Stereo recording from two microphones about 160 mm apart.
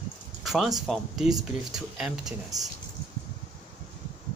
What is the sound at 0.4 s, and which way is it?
Speech, centre (ahead or behind).